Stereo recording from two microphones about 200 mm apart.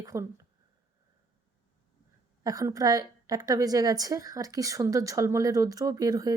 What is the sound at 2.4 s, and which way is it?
A woman's voice, 15° right (ahead or behind).